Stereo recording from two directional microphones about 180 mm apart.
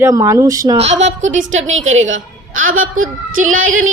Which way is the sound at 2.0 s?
90° right.